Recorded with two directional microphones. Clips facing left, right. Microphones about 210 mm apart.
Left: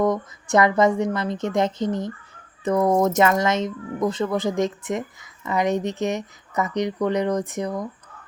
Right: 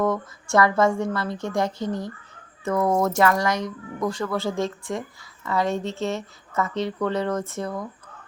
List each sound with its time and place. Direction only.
0.0 s speech: 20° left (ahead or behind)